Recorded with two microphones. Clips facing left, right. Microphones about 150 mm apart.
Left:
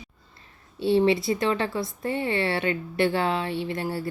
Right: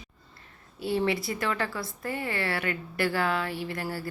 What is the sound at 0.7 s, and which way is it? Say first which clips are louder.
A woman's voice: left 7 dB; 25° left (ahead or behind).